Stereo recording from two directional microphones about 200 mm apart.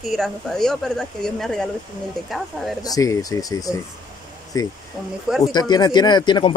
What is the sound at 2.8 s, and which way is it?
Speech, 15° left (ahead or behind).